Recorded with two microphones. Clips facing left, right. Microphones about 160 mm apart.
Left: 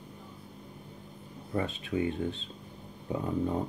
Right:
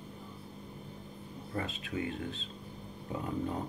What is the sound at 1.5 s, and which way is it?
Speech, 25° left (ahead or behind).